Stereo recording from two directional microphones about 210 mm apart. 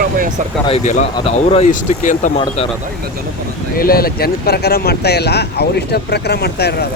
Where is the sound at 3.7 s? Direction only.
45° left (ahead or behind).